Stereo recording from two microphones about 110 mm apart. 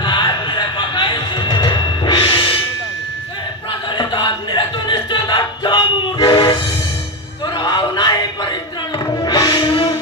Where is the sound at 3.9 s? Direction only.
45° left (ahead or behind).